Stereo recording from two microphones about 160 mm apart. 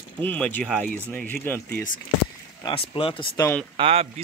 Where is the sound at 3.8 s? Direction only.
40° right (ahead or behind).